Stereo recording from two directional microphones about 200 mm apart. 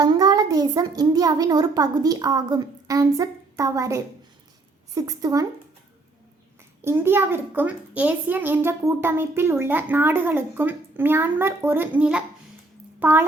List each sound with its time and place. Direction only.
0.0 s a child's voice: 20° right (ahead or behind)
6.8 s a child's voice: 10° right (ahead or behind)